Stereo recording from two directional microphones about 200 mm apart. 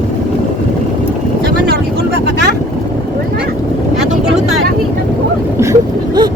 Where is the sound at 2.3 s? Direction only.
60° right (ahead or behind).